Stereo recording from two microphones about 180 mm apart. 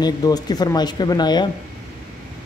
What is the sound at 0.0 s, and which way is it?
Speech, 20° left (ahead or behind).